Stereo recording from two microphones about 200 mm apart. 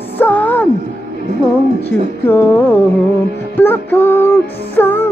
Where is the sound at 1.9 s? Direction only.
10° left (ahead or behind).